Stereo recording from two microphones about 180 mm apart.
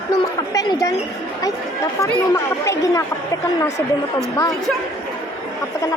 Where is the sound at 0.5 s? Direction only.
20° left (ahead or behind).